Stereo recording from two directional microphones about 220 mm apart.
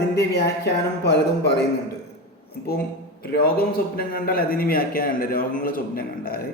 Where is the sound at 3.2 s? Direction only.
45° left (ahead or behind).